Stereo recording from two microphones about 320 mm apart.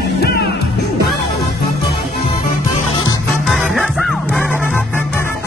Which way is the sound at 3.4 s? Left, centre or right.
Centre.